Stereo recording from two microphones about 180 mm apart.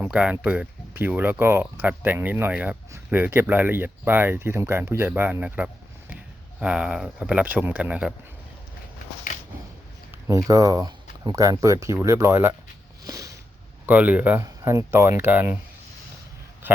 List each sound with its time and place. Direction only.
0.0 s speech: 5° right (ahead or behind)
10.2 s speech: 20° right (ahead or behind)
13.1 s a sound: 20° right (ahead or behind)
13.8 s speech: 10° right (ahead or behind)